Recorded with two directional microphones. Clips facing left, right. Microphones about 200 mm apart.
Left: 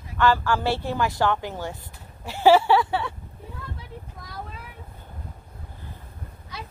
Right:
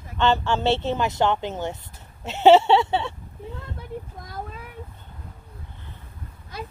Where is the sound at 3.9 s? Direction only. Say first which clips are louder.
Right 7 dB; 50° right (ahead or behind).